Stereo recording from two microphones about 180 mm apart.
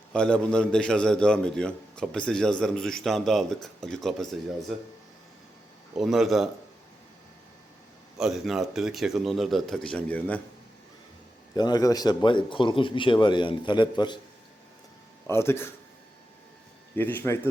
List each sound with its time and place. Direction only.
0.1 s a man's voice: 5° left (ahead or behind)
6.0 s a man's voice: centre (ahead or behind)
8.2 s a man's voice: centre (ahead or behind)
11.5 s speech: 20° left (ahead or behind)
15.3 s speech: 15° left (ahead or behind)
16.9 s speech: 10° left (ahead or behind)